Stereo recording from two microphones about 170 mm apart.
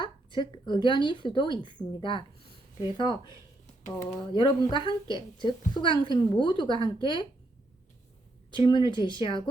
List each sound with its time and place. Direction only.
0.0 s a woman's voice: 25° left (ahead or behind)
4.4 s a woman's voice: 30° left (ahead or behind)
8.5 s a woman's voice: 25° left (ahead or behind)